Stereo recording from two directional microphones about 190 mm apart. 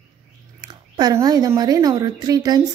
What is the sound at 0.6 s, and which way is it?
Speech, 20° right (ahead or behind).